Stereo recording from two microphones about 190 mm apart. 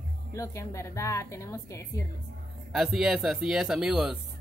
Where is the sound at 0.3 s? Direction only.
15° left (ahead or behind).